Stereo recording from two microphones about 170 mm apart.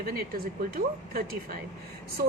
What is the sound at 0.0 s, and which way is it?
A woman's voice, 60° right (ahead or behind).